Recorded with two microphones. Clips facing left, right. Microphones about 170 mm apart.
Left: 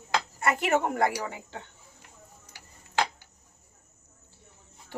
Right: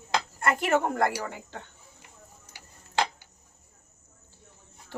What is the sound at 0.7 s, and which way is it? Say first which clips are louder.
Speech: even; 15° left (ahead or behind).